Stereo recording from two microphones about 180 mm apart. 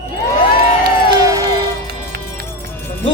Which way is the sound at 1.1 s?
20° right (ahead or behind).